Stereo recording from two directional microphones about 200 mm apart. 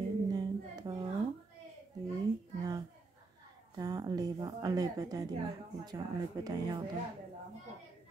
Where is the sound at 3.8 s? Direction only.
20° right (ahead or behind).